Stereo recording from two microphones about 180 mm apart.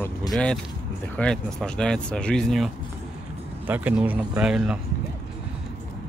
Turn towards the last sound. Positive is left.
turn(degrees=-5)  # may be behind; listen again after turning